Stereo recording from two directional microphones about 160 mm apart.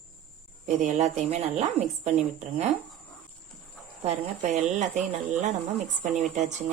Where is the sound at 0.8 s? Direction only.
45° right (ahead or behind).